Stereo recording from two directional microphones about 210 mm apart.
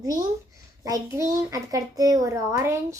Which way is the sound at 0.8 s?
15° right (ahead or behind).